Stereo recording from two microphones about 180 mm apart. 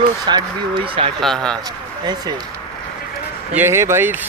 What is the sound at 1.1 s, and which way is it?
Speech, 5° left (ahead or behind).